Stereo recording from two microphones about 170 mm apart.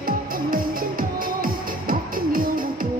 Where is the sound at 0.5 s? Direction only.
55° right (ahead or behind).